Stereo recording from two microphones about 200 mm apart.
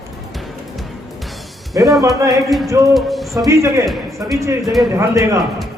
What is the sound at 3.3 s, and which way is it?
A man's voice, 15° right (ahead or behind).